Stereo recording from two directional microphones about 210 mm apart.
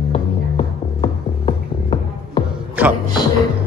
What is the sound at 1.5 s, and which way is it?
Music, 25° left (ahead or behind).